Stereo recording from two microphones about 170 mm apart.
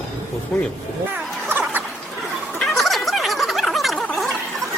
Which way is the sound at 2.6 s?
Centre (ahead or behind).